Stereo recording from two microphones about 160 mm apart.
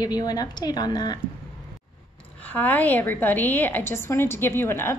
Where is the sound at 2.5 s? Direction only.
10° left (ahead or behind).